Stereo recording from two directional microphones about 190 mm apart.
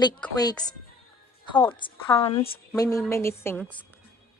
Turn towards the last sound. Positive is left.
turn(degrees=10)  # may be behind; listen again after turning